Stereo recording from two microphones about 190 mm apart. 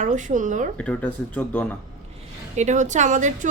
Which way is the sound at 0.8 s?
5° left (ahead or behind).